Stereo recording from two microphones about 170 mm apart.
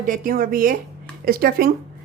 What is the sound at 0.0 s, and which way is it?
Speech, 55° right (ahead or behind).